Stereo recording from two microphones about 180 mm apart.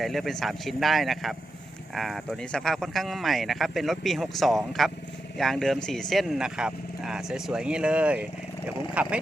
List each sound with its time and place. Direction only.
0.0 s speech: centre (ahead or behind)